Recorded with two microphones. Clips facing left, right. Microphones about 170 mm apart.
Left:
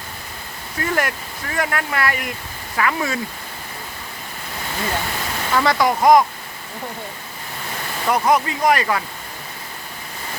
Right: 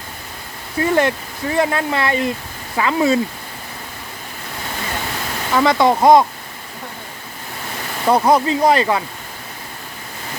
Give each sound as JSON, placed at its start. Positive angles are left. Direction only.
{"t": 0.8, "sound": "speech", "side_deg": -25}
{"t": 5.5, "sound": "speech", "side_deg": -20}
{"t": 8.0, "sound": "speech", "side_deg": -30}